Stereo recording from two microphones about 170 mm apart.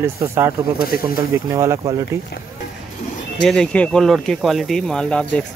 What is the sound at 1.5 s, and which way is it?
Speech, 15° right (ahead or behind).